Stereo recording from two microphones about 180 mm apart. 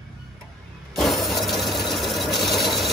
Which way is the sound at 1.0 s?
Centre (ahead or behind).